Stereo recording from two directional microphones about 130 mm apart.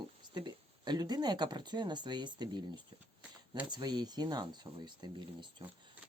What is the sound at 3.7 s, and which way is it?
Speech, 35° right (ahead or behind).